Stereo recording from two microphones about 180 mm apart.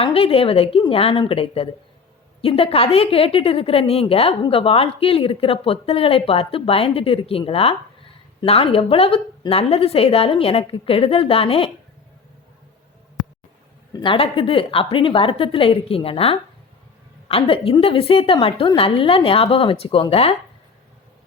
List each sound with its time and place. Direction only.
0.0 s a woman's voice: 30° left (ahead or behind)
13.9 s a woman's voice: 30° left (ahead or behind)